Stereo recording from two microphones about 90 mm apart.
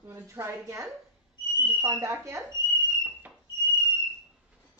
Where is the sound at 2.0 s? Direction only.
35° right (ahead or behind).